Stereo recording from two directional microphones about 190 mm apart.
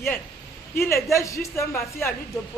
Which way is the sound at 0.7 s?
15° left (ahead or behind).